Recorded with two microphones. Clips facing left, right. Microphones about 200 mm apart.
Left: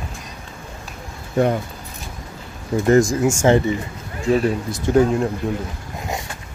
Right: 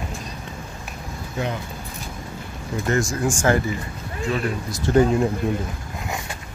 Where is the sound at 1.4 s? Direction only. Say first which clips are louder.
Left 9 dB; 55° left (ahead or behind).